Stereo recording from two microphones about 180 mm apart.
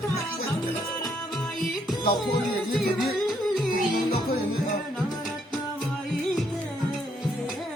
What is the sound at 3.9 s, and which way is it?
Music, 55° left (ahead or behind).